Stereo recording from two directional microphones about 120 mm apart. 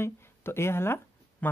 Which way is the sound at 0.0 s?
20° left (ahead or behind).